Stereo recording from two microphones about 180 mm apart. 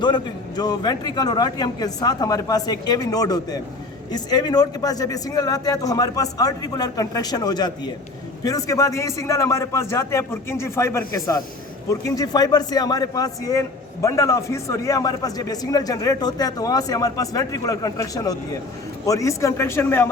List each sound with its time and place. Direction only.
0.0 s a man's voice: 25° left (ahead or behind)